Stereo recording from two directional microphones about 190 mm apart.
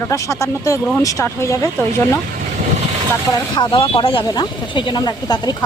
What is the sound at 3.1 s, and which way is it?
Speech, 20° left (ahead or behind).